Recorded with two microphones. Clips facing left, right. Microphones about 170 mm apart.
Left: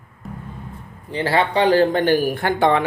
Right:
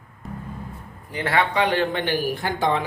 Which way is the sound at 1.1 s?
30° left (ahead or behind).